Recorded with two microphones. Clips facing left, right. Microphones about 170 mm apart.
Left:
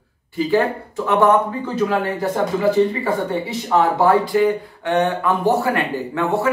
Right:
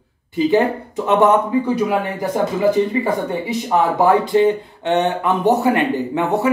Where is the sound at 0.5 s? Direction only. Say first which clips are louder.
Right 2 dB; 20° right (ahead or behind).